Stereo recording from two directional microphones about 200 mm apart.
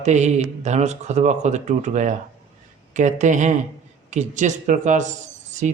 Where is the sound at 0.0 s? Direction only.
35° right (ahead or behind).